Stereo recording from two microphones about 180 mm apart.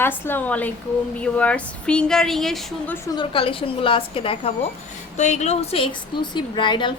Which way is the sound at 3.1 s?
30° left (ahead or behind).